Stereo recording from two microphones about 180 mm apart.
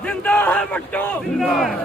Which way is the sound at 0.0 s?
5° left (ahead or behind).